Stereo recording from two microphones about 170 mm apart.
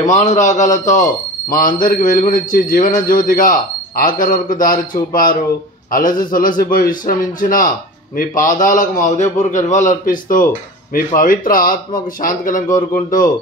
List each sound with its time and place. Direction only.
0.0 s a man's voice: 45° left (ahead or behind)